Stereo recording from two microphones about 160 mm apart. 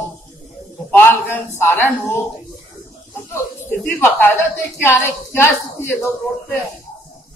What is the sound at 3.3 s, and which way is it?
A woman's voice, 15° left (ahead or behind).